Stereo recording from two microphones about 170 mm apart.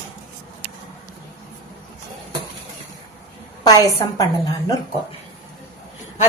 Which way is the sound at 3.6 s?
20° left (ahead or behind).